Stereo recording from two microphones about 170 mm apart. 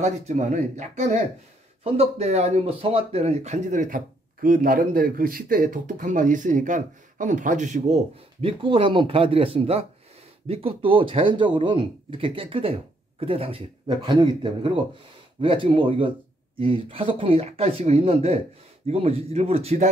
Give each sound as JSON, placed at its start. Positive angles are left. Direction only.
{"t": 0.0, "sound": "speech", "side_deg": -40}